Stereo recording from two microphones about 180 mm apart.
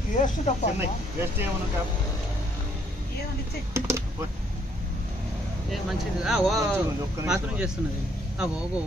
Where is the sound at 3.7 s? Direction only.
15° right (ahead or behind).